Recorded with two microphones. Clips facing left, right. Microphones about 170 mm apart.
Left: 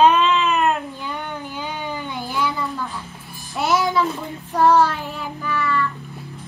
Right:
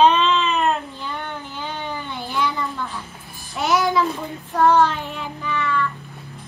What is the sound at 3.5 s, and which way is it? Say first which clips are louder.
Child singing: even; centre (ahead or behind).